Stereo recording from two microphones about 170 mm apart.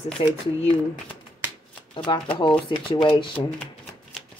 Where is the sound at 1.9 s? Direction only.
30° left (ahead or behind).